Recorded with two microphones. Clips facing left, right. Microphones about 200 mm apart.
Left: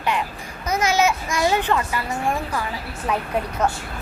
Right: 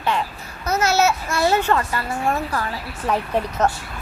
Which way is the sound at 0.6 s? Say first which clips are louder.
Right 1 dB; 10° left (ahead or behind).